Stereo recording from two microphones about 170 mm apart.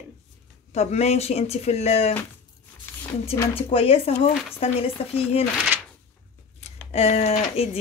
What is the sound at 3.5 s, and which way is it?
Speech, 35° left (ahead or behind).